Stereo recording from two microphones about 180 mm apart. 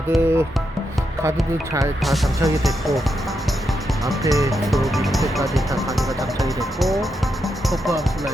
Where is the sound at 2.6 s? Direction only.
Centre (ahead or behind).